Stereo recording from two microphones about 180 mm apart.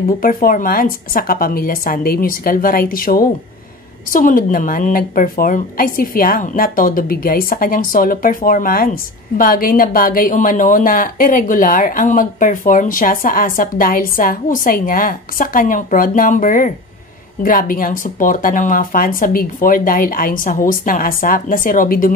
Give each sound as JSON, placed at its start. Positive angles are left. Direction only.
{"t": 0.2, "sound": "speech", "side_deg": 50}